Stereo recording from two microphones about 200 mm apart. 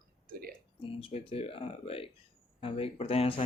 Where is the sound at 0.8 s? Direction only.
25° left (ahead or behind).